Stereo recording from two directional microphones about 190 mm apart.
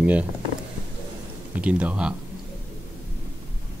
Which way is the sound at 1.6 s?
5° right (ahead or behind).